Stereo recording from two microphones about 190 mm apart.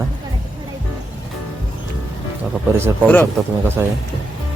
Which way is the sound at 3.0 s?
10° left (ahead or behind).